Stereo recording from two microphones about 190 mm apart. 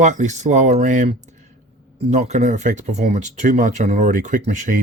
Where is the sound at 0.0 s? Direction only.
40° right (ahead or behind).